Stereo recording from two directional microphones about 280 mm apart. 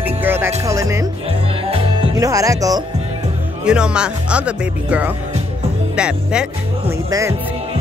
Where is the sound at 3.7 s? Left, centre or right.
Centre.